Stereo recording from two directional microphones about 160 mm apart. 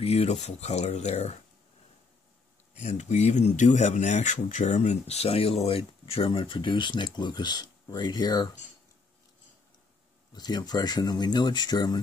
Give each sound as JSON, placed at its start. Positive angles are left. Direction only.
{"t": 0.0, "sound": "speech", "side_deg": 40}
{"t": 2.7, "sound": "speech", "side_deg": 45}
{"t": 10.3, "sound": "speech", "side_deg": 25}